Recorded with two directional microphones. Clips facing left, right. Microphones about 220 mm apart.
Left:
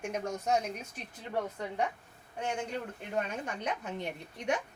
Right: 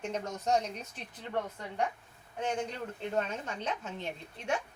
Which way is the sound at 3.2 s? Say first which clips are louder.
Left 1 dB; 15° left (ahead or behind).